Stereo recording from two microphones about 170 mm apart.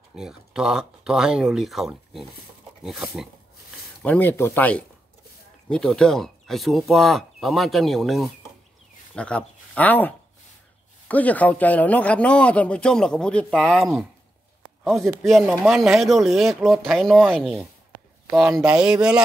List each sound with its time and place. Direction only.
0.1 s speech: 5° right (ahead or behind)
4.0 s a man's voice: 10° left (ahead or behind)